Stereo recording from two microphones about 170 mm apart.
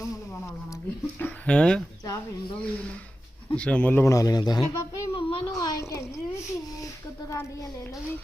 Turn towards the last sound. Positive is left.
turn(degrees=15)  # may be behind; listen again after turning